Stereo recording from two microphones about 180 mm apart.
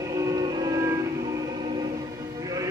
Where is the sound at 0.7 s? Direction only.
15° right (ahead or behind).